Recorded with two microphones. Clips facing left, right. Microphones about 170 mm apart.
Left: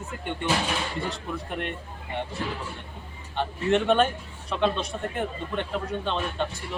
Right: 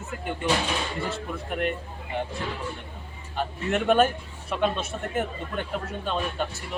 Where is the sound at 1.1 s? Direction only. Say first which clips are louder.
Right 1 dB; 5° right (ahead or behind).